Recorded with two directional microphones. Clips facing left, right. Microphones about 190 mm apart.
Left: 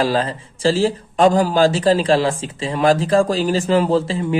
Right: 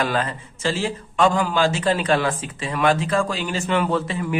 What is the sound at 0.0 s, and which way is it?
A man's voice, 30° left (ahead or behind).